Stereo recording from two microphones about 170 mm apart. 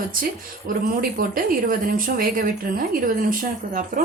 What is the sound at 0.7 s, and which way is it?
Speech, 55° right (ahead or behind).